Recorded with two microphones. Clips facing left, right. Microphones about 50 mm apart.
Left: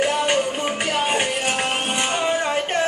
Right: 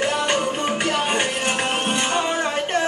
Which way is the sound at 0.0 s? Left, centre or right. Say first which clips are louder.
Left 1 dB; centre.